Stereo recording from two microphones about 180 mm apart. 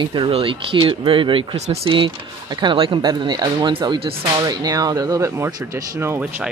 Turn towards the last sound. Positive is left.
turn(degrees=-10)  # may be behind; listen again after turning